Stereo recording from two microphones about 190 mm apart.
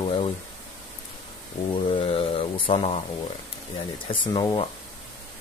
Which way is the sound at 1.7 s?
30° left (ahead or behind).